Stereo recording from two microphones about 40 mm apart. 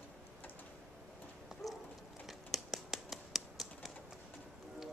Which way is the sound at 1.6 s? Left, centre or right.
Centre.